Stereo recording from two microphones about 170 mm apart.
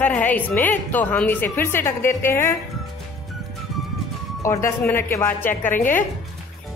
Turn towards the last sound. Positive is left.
turn(degrees=10)  # may be behind; listen again after turning